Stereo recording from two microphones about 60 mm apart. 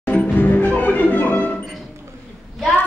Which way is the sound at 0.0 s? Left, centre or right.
Left.